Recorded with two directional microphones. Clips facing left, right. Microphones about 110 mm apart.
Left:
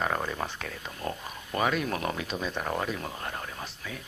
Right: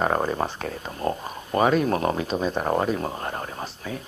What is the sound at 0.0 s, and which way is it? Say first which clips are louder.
Speech: right 7 dB; 35° right (ahead or behind).